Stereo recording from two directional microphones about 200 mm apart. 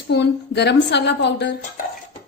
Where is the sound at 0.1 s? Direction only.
60° left (ahead or behind).